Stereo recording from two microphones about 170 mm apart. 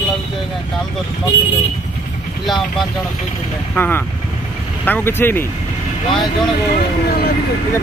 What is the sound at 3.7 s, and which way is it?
Speech, 10° left (ahead or behind).